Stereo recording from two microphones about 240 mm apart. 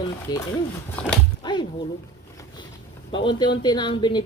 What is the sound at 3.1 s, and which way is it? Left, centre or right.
Speech, centre.